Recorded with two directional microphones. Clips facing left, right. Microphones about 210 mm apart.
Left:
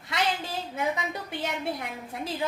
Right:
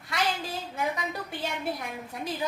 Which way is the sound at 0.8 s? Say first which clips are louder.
Left 1 dB; 25° left (ahead or behind).